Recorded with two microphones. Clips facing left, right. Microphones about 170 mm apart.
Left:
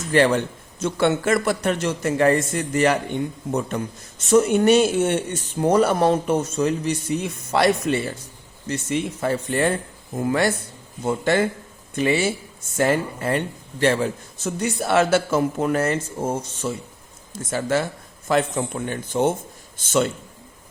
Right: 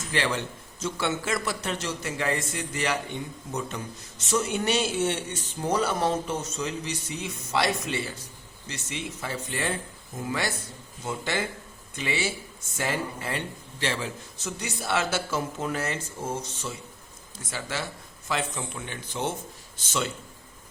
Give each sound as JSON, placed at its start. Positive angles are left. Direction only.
{"t": 0.1, "sound": "a man's voice", "side_deg": 50}
{"t": 4.2, "sound": "a man's voice", "side_deg": 50}